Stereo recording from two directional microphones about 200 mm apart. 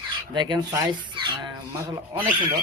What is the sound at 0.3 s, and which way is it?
Speech, 20° right (ahead or behind).